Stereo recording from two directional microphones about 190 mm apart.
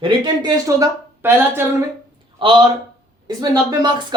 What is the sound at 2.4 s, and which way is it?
Speech, 25° right (ahead or behind).